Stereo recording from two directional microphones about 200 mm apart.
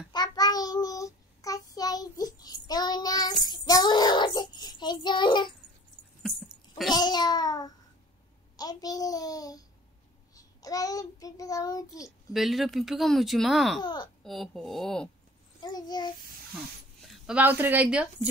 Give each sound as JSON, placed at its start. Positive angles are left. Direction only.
{"t": 0.1, "sound": "child singing", "side_deg": 20}
{"t": 6.9, "sound": "babbling", "side_deg": 20}
{"t": 8.5, "sound": "a sound", "side_deg": 20}
{"t": 10.3, "sound": "child singing", "side_deg": 15}
{"t": 12.3, "sound": "speech", "side_deg": 0}
{"t": 13.7, "sound": "a sound", "side_deg": 25}
{"t": 14.2, "sound": "speech", "side_deg": 0}
{"t": 15.6, "sound": "child singing", "side_deg": 20}
{"t": 17.1, "sound": "speech", "side_deg": -5}